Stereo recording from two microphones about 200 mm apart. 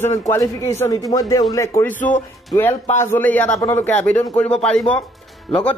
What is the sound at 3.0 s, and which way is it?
Speech, 10° left (ahead or behind).